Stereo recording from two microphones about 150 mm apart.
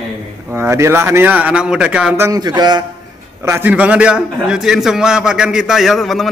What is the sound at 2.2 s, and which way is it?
Speech, 25° right (ahead or behind).